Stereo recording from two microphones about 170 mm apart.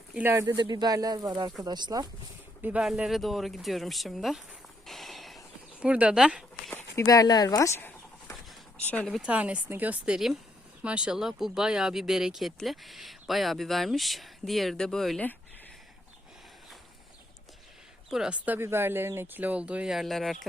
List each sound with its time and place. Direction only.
0.1 s speech: 10° right (ahead or behind)
2.6 s speech: 10° right (ahead or behind)
4.9 s a sound: centre (ahead or behind)
5.8 s speech: 5° right (ahead or behind)
6.7 s a sound: 15° left (ahead or behind)
8.8 s speech: 10° left (ahead or behind)
9.2 s speech: 5° right (ahead or behind)
18.1 s speech: 5° right (ahead or behind)